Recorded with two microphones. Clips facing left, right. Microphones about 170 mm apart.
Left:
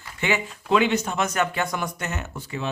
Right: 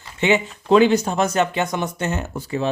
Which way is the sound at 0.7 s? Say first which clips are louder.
Right 6 dB; 35° right (ahead or behind).